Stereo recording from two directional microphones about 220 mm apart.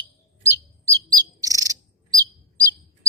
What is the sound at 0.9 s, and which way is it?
Chirp, 15° right (ahead or behind).